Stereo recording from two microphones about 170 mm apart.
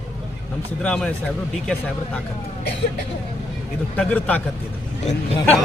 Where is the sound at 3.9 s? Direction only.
5° left (ahead or behind).